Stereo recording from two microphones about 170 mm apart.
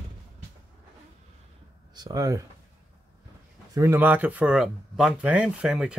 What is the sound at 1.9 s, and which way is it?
Speech, 25° right (ahead or behind).